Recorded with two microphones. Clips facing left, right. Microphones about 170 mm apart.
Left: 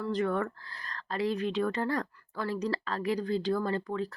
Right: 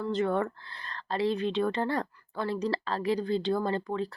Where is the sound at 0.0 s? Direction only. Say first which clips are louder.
Right 2 dB; 25° right (ahead or behind).